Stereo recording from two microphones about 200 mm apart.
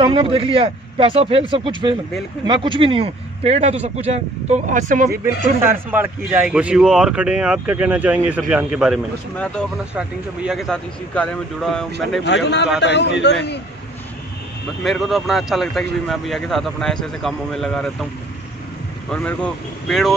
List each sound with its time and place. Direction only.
0.0 s speech: 25° right (ahead or behind); by 5.2 s 45° right (ahead or behind)
5.6 s a man's voice: 10° right (ahead or behind)
12.8 s a man's voice: 60° left (ahead or behind)
14.8 s a man's voice: centre (ahead or behind)
19.0 s a man's voice: 5° left (ahead or behind)